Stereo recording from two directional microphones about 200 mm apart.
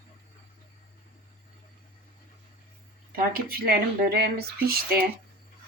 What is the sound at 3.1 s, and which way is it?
Speech, 50° right (ahead or behind).